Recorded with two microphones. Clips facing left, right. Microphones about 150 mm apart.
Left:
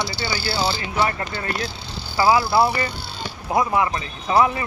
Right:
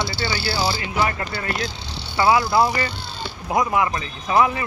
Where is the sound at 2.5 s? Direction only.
10° left (ahead or behind).